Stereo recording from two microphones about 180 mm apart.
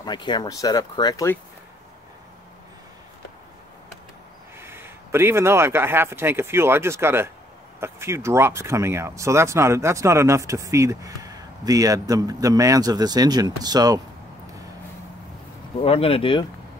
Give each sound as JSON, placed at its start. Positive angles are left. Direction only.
{"t": 0.0, "sound": "speech", "side_deg": 25}
{"t": 4.6, "sound": "speech", "side_deg": -15}
{"t": 15.8, "sound": "speech", "side_deg": 30}